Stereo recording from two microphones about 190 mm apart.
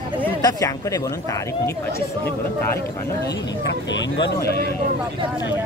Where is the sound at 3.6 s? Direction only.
70° left (ahead or behind).